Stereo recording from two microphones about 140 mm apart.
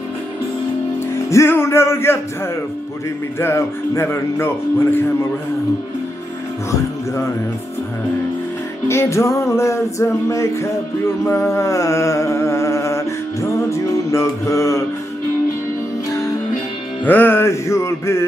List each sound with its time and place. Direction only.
1.1 s music: 20° left (ahead or behind)
3.3 s speech: 20° left (ahead or behind)
8.8 s music: 20° left (ahead or behind)
11.2 s a sound: 20° left (ahead or behind)
17.0 s music: 15° left (ahead or behind)